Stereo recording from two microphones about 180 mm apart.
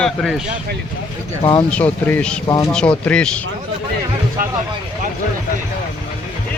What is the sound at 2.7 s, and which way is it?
Speech, 5° left (ahead or behind).